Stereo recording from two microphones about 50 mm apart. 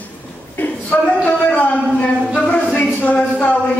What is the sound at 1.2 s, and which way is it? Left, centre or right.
A man's voice, left.